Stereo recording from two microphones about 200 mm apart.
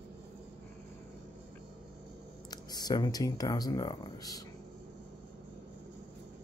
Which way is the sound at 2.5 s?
20° left (ahead or behind).